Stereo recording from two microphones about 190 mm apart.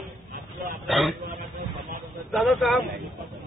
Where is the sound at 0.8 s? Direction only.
Centre (ahead or behind).